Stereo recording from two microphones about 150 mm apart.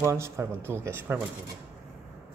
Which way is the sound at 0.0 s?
20° right (ahead or behind).